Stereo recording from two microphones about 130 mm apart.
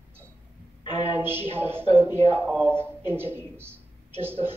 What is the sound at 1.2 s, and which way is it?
Speech, 15° right (ahead or behind).